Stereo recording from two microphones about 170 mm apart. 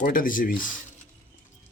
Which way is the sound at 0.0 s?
55° left (ahead or behind).